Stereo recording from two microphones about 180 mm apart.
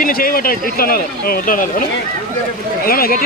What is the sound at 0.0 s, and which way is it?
Speech, 50° left (ahead or behind).